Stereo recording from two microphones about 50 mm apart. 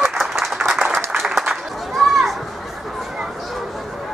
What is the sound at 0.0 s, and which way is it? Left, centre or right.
Applause, centre.